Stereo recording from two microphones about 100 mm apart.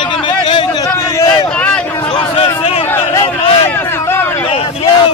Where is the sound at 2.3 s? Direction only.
90° left.